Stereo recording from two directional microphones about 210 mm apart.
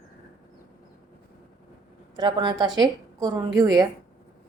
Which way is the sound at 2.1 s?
20° right (ahead or behind).